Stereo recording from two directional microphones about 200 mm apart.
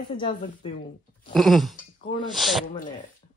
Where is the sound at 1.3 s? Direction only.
Centre (ahead or behind).